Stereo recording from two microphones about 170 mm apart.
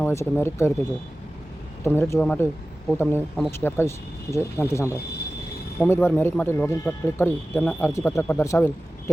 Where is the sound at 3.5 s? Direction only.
15° left (ahead or behind).